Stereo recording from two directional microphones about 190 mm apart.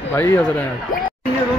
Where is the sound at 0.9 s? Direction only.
45° left (ahead or behind).